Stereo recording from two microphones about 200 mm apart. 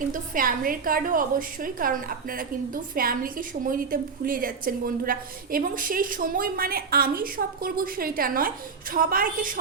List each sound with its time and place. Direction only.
0.1 s a woman's voice: 45° right (ahead or behind)